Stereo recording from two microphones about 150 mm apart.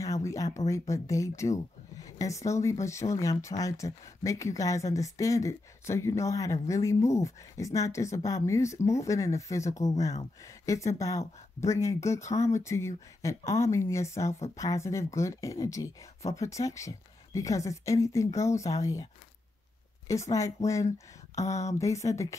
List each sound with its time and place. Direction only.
0.0 s a sound: 20° left (ahead or behind)
0.6 s speech: 20° left (ahead or behind)
20.1 s speech: 20° left (ahead or behind)